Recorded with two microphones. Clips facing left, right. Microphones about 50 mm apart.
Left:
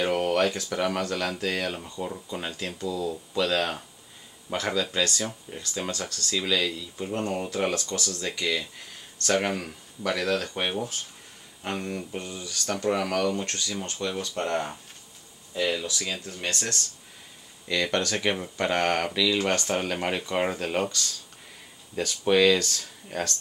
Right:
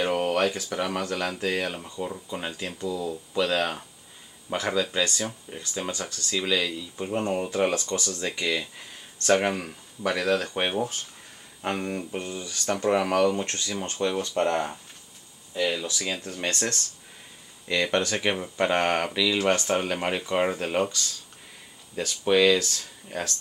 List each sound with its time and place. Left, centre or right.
0.0 s speech: centre
12.6 s speech: centre
14.3 s speech: centre
17.6 s speech: centre